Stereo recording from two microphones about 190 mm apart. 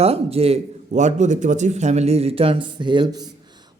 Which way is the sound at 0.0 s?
30° right (ahead or behind).